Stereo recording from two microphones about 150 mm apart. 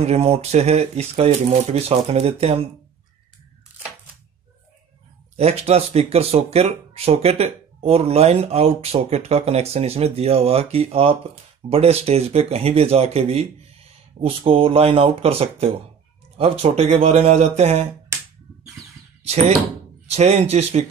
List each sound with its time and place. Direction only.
0.0 s speech: 45° right (ahead or behind)
5.3 s speech: 45° right (ahead or behind)
18.1 s a sound: 15° right (ahead or behind)
19.2 s speech: 45° right (ahead or behind)